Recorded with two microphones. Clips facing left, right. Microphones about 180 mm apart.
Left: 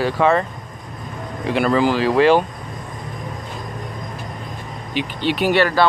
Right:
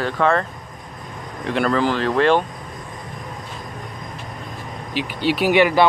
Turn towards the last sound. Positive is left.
turn(degrees=-15)  # may be behind; listen again after turning